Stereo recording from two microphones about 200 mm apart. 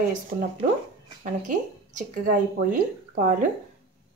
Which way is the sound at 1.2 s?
40° right (ahead or behind).